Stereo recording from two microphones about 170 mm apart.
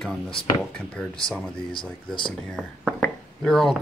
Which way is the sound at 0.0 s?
5° left (ahead or behind).